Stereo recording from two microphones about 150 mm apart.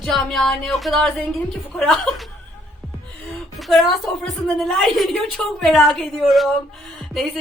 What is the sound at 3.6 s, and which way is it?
A woman's voice, centre (ahead or behind).